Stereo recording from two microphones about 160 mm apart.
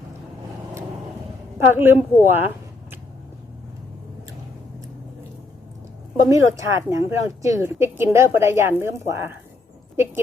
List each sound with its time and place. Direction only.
1.7 s a woman's voice: 15° right (ahead or behind)
6.2 s a woman's voice: 20° right (ahead or behind)